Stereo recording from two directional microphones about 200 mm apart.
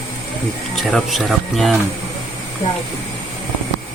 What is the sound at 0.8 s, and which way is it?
Speech, centre (ahead or behind).